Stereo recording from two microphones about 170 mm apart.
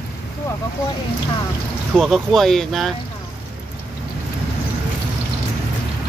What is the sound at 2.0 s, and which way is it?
Speech, centre (ahead or behind).